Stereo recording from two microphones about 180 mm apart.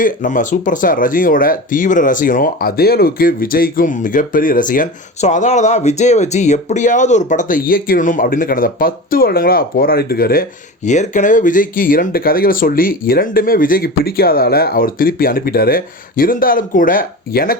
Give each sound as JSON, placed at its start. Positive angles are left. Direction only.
{"t": 0.0, "sound": "speech", "side_deg": 45}
{"t": 10.8, "sound": "speech", "side_deg": 45}